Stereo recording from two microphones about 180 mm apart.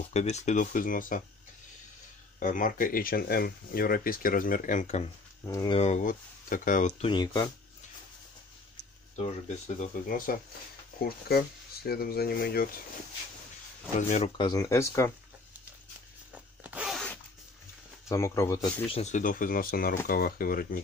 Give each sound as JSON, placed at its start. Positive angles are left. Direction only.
{"t": 0.1, "sound": "speech", "side_deg": 40}
{"t": 2.4, "sound": "speech", "side_deg": 50}
{"t": 5.5, "sound": "speech", "side_deg": 20}
{"t": 5.8, "sound": "speech", "side_deg": 40}
{"t": 7.1, "sound": "speech", "side_deg": 25}
{"t": 9.8, "sound": "speech", "side_deg": 50}
{"t": 13.9, "sound": "speech", "side_deg": 40}
{"t": 14.3, "sound": "speech", "side_deg": 25}
{"t": 16.6, "sound": "zipper", "side_deg": -5}
{"t": 18.0, "sound": "speech", "side_deg": 15}
{"t": 18.9, "sound": "speech", "side_deg": 35}